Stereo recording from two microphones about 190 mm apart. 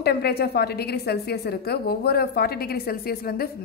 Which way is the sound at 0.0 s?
55° left (ahead or behind).